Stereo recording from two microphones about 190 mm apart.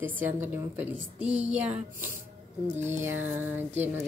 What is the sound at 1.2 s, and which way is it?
Music, 35° right (ahead or behind).